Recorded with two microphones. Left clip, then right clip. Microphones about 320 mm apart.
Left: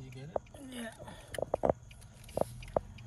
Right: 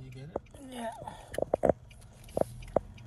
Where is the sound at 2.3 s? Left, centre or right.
Right.